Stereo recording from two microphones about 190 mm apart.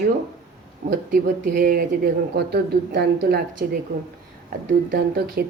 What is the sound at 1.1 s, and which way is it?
Speech, 45° right (ahead or behind).